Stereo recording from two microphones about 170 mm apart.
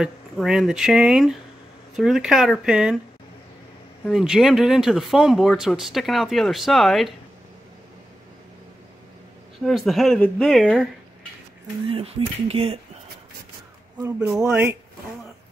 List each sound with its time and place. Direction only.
0.0 s speech: centre (ahead or behind)
4.0 s speech: centre (ahead or behind)
9.6 s speech: centre (ahead or behind)
11.9 s speech: 35° right (ahead or behind)
14.0 s speech: 5° right (ahead or behind)